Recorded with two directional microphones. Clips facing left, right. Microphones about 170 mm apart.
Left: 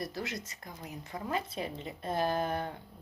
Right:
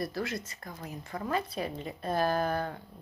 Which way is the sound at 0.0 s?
20° left (ahead or behind).